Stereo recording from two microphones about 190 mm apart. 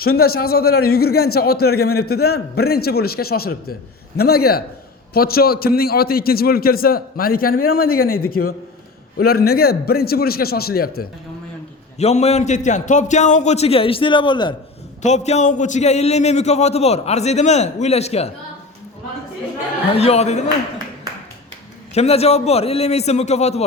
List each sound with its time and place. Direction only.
0.0 s a man's voice: 55° left (ahead or behind)
11.9 s a man's voice: 35° left (ahead or behind)
15.0 s a man's voice: 35° left (ahead or behind)
19.9 s a man's voice: 35° left (ahead or behind)
21.9 s a man's voice: 35° left (ahead or behind)